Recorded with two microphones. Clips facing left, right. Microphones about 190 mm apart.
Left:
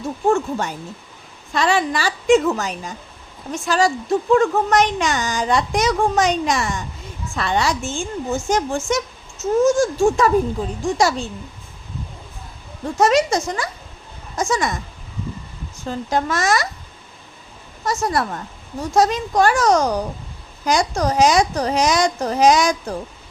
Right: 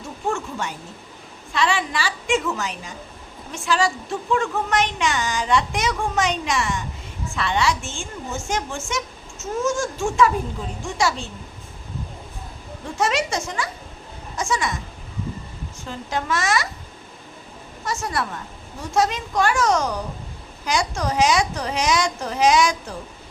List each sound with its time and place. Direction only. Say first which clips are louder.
0.3 s a woman's voice: left 7 dB; 40° left (ahead or behind)
13.0 s a woman's voice: left 7 dB; 40° left (ahead or behind)
15.9 s a woman's voice: left 5 dB; 40° left (ahead or behind)
17.8 s a woman's voice: left 5 dB; 40° left (ahead or behind)